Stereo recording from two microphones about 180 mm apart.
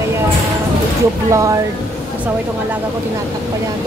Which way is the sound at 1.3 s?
15° right (ahead or behind).